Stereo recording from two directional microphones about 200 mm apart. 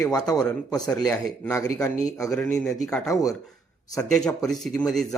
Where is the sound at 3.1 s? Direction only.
15° left (ahead or behind).